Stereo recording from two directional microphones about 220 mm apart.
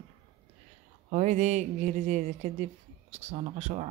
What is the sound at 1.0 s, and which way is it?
Speech, 30° right (ahead or behind).